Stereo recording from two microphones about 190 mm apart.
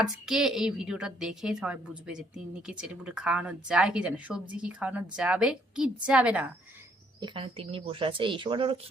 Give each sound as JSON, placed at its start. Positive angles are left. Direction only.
{"t": 0.0, "sound": "speech", "side_deg": 0}
{"t": 7.2, "sound": "speech", "side_deg": -25}